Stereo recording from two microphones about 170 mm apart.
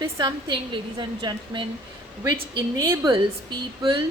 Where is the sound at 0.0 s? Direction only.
25° right (ahead or behind).